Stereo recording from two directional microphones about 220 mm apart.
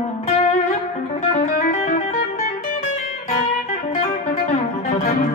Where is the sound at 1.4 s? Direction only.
30° left (ahead or behind).